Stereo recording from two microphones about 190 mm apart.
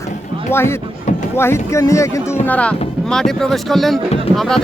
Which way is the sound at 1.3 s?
15° left (ahead or behind).